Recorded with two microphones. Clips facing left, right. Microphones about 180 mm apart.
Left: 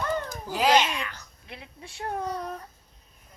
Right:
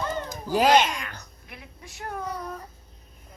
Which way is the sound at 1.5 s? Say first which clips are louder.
Left 3 dB; 25° left (ahead or behind).